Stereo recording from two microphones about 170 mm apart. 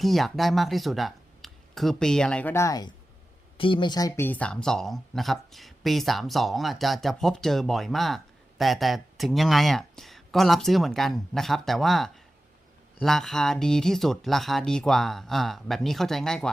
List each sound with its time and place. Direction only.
0.0 s speech: centre (ahead or behind); by 4.3 s 20° left (ahead or behind)
4.3 s speech: 5° left (ahead or behind)